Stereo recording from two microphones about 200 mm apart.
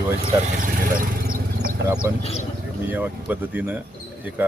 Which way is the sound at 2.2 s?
30° left (ahead or behind).